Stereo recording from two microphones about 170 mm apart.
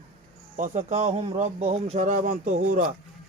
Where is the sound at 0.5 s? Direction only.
45° right (ahead or behind).